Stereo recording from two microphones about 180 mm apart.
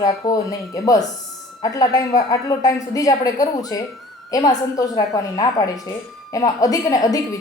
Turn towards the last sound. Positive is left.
turn(degrees=20)  # may be behind; listen again after turning